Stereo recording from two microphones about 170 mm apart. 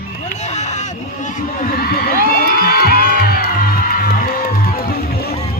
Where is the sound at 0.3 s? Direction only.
45° left (ahead or behind); by 2.9 s 60° left (ahead or behind).